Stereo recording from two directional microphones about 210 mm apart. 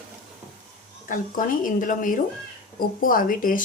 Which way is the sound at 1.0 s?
40° left (ahead or behind).